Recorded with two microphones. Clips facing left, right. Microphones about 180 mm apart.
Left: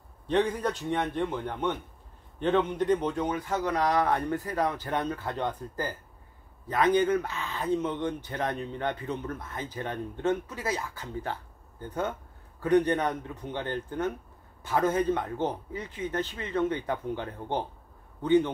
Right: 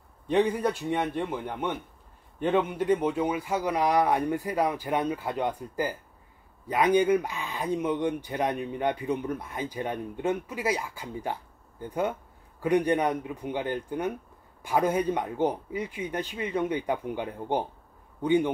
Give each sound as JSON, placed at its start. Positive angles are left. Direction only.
{"t": 0.3, "sound": "speech", "side_deg": -10}